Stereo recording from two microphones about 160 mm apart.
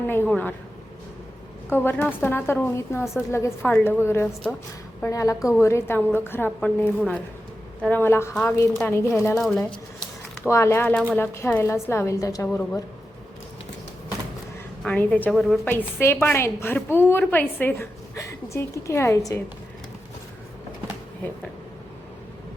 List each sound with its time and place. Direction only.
0.3 s a woman's voice: 10° left (ahead or behind)
1.7 s a woman's voice: 15° left (ahead or behind)
9.4 s a sound: 5° left (ahead or behind)
10.5 s a woman's voice: 15° left (ahead or behind)
14.8 s a woman's voice: 10° left (ahead or behind)
15.6 s a woman's voice: 15° left (ahead or behind)